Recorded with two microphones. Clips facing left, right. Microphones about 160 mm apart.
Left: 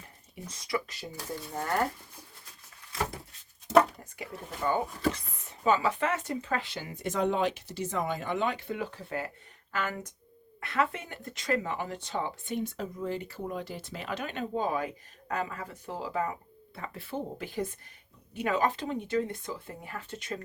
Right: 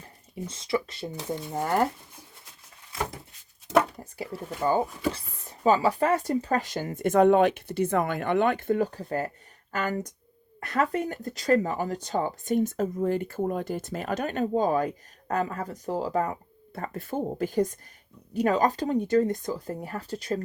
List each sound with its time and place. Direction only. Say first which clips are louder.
0.4 s speech: right 5 dB; 25° right (ahead or behind)
4.0 s speech: right 6 dB; 30° right (ahead or behind)